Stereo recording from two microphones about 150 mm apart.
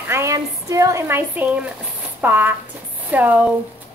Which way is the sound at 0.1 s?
20° right (ahead or behind).